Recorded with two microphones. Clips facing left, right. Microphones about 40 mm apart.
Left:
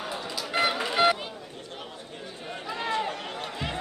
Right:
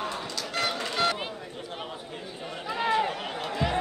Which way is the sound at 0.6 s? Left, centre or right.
Centre.